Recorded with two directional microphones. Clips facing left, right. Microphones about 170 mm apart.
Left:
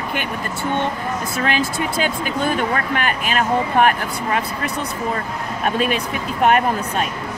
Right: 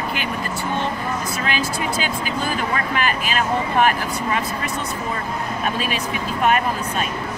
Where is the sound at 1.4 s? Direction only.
55° left (ahead or behind).